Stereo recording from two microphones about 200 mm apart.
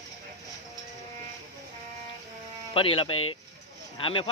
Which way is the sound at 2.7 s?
25° left (ahead or behind).